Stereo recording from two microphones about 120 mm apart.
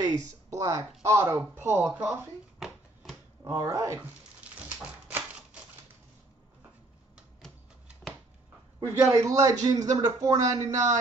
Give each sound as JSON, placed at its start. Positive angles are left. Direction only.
{"t": 0.5, "sound": "speech", "side_deg": -25}
{"t": 2.6, "sound": "a sound", "side_deg": 0}
{"t": 3.4, "sound": "speech", "side_deg": -25}
{"t": 4.4, "sound": "dog", "side_deg": -10}
{"t": 5.0, "sound": "typewriter", "side_deg": -10}
{"t": 8.7, "sound": "speech", "side_deg": -25}